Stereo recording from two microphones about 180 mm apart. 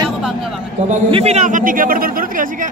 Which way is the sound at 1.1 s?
35° right (ahead or behind).